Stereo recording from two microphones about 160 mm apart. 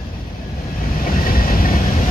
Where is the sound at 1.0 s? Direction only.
65° left (ahead or behind).